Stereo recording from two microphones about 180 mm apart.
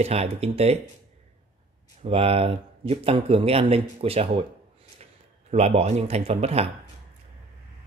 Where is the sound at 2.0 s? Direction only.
30° right (ahead or behind).